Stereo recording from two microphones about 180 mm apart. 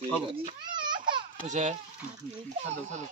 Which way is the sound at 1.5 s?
40° right (ahead or behind).